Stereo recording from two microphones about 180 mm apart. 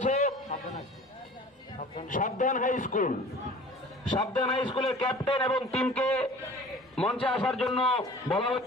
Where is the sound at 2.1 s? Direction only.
45° left (ahead or behind).